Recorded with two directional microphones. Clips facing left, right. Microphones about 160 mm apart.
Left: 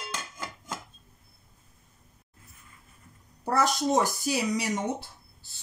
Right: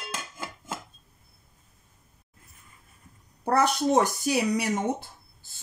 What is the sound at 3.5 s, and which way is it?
Speech, 60° right (ahead or behind).